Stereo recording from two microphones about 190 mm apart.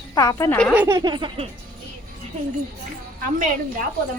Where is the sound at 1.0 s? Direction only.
25° right (ahead or behind).